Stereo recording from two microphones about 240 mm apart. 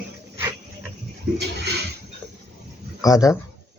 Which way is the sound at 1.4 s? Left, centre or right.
Right.